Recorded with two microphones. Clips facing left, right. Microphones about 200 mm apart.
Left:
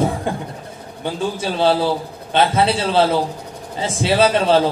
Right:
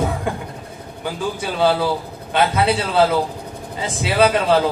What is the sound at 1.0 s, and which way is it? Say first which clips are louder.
Speech: left 2 dB; 30° left (ahead or behind).